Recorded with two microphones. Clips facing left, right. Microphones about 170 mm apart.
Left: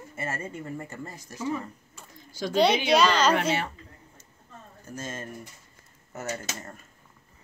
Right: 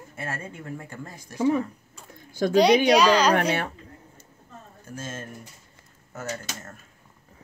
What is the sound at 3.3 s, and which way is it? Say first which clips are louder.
Speech: right 2 dB; 55° right (ahead or behind).